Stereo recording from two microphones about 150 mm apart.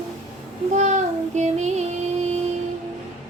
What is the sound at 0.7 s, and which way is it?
Child singing, 50° right (ahead or behind).